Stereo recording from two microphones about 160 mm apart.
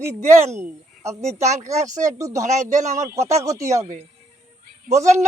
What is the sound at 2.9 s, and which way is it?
Speech, 20° right (ahead or behind).